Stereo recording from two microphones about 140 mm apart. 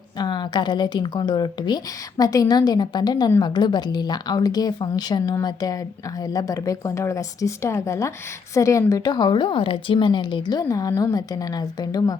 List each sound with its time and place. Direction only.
0.2 s a woman's voice: 30° left (ahead or behind)